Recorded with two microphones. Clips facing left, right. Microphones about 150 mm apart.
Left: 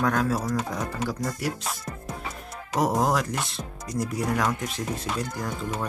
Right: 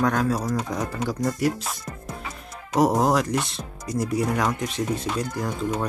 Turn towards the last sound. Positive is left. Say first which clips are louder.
# right 4 dB
turn(degrees=0)  # may be behind; listen again after turning